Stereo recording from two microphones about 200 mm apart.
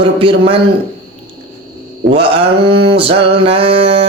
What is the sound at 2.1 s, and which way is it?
A man's voice, 30° right (ahead or behind).